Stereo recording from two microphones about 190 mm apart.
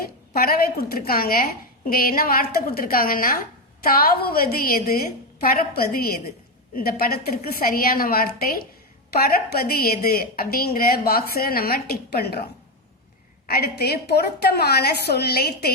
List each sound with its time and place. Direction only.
0.0 s a woman's voice: 50° left (ahead or behind)
13.5 s a woman's voice: 60° left (ahead or behind)